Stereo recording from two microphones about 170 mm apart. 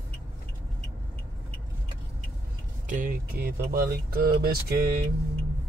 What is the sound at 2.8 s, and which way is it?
Speech, 50° right (ahead or behind).